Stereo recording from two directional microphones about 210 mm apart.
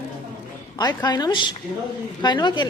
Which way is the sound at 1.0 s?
20° left (ahead or behind).